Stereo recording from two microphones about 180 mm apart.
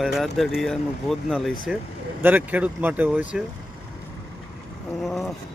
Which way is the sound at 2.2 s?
10° right (ahead or behind).